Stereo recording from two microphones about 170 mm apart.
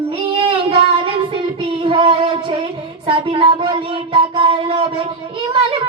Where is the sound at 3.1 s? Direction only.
30° right (ahead or behind).